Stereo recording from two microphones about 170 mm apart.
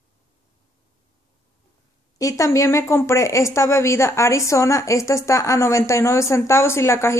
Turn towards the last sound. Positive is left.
turn(degrees=15)  # may be behind; listen again after turning